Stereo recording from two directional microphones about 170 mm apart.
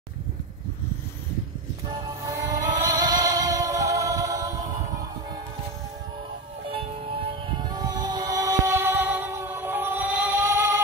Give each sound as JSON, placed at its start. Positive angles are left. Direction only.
{"t": 2.2, "sound": "music", "side_deg": -20}
{"t": 6.7, "sound": "music", "side_deg": -35}